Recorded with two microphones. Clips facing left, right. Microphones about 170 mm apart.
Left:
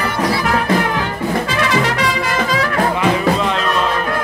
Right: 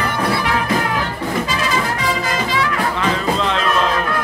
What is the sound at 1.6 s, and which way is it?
Music, 75° left (ahead or behind).